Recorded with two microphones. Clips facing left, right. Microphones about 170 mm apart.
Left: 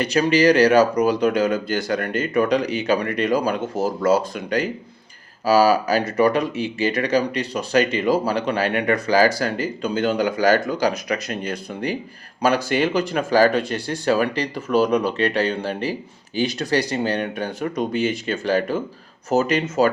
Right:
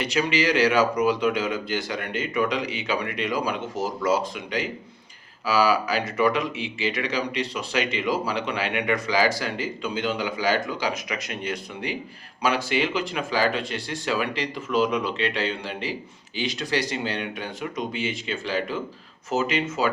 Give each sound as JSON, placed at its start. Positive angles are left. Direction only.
{"t": 0.0, "sound": "speech", "side_deg": 40}